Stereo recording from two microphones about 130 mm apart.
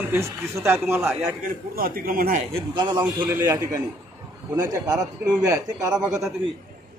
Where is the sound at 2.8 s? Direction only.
35° right (ahead or behind).